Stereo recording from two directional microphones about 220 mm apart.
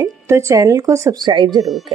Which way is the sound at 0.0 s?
15° right (ahead or behind).